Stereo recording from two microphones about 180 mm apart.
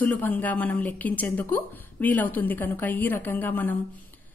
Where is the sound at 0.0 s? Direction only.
10° left (ahead or behind).